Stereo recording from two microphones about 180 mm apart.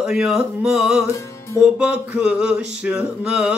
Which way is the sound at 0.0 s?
Centre (ahead or behind).